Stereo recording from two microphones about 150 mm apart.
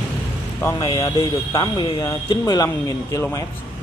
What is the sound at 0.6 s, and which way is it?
Speech, 20° left (ahead or behind).